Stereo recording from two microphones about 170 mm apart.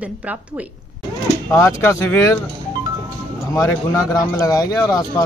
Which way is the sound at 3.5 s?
20° left (ahead or behind).